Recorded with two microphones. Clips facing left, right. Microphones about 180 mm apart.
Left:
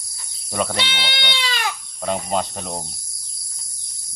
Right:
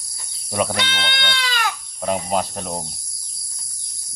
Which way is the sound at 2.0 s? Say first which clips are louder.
Right 1 dB; 5° right (ahead or behind).